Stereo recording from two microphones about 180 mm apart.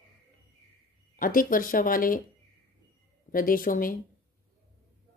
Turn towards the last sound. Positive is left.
turn(degrees=50)  # may be behind; listen again after turning